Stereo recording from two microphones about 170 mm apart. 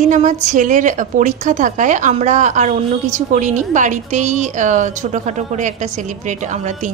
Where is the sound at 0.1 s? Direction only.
45° right (ahead or behind).